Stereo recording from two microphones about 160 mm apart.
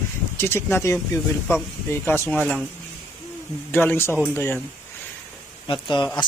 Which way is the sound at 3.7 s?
10° left (ahead or behind).